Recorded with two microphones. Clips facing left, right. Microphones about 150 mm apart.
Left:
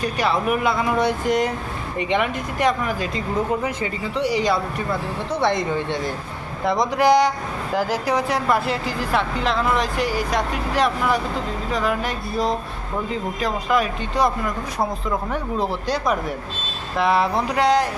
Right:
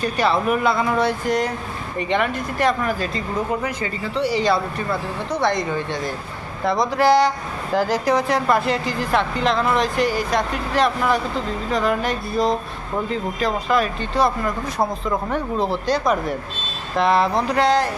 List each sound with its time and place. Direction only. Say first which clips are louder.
0.0 s speech: right 2 dB; 10° left (ahead or behind)
5.3 s speech: even; 25° left (ahead or behind)